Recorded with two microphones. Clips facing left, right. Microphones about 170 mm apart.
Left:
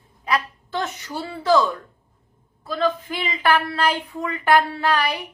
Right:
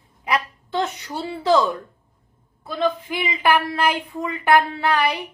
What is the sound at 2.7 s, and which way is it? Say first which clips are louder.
Speech: even; 15° right (ahead or behind).